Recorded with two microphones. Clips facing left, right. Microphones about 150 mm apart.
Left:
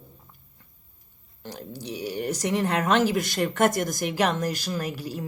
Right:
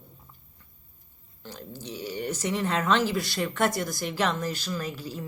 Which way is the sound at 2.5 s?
55° left (ahead or behind).